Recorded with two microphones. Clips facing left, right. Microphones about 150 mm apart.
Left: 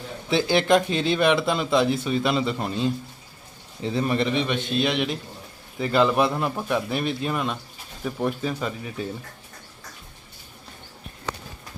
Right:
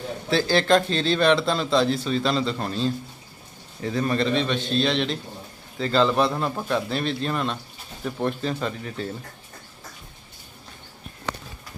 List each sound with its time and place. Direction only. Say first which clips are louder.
0.3 s speech: even; 20° left (ahead or behind)